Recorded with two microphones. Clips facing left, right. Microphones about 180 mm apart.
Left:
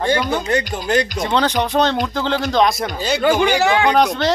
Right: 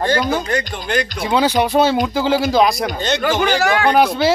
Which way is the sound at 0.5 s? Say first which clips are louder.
Left 2 dB; 25° left (ahead or behind).